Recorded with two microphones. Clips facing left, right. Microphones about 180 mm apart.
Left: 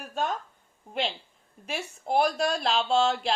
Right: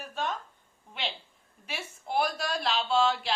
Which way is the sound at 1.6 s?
40° left (ahead or behind).